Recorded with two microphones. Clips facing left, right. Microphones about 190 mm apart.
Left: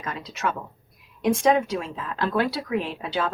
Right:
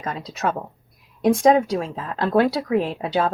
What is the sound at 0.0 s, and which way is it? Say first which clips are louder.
Speech: right 4 dB; 35° right (ahead or behind).